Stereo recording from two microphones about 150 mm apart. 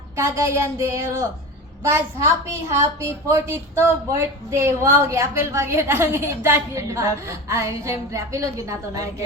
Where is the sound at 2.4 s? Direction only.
20° right (ahead or behind).